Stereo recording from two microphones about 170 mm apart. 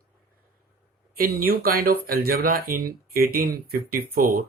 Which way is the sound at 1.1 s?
60° right (ahead or behind).